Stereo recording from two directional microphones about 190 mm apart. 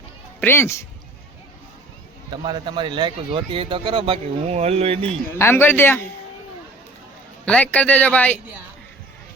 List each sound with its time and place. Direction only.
0.3 s speech: 10° left (ahead or behind)
2.3 s speech: 20° right (ahead or behind)
5.4 s speech: 10° left (ahead or behind)
7.4 s speech: 5° left (ahead or behind)